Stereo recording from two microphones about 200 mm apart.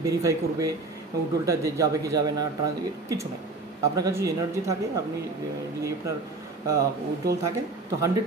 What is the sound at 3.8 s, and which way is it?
Speech, 15° right (ahead or behind).